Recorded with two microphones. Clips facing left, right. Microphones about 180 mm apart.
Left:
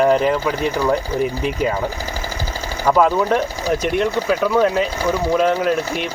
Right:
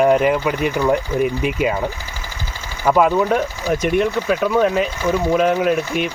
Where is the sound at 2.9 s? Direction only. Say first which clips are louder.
Even; centre (ahead or behind).